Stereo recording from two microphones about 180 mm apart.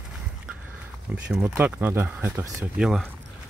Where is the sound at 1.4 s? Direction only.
10° right (ahead or behind).